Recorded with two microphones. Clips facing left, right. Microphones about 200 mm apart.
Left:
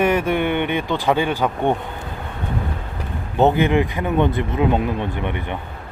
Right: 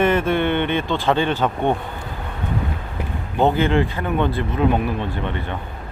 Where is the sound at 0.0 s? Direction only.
10° left (ahead or behind).